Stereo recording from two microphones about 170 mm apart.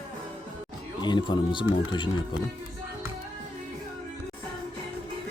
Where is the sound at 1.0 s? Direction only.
25° left (ahead or behind).